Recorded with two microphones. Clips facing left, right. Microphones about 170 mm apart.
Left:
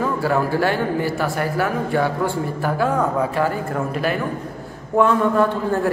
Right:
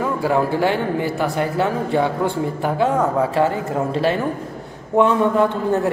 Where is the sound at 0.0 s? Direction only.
15° right (ahead or behind).